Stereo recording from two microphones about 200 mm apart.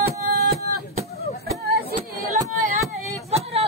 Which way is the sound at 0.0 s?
50° right (ahead or behind).